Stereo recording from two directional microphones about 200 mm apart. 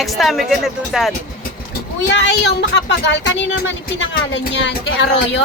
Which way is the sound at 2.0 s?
60° left (ahead or behind).